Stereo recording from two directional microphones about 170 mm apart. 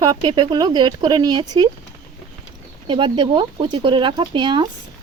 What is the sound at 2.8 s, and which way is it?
Speech, 30° right (ahead or behind).